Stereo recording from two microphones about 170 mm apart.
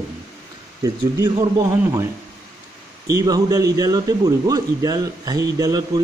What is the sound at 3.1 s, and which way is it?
A man's voice, 20° right (ahead or behind).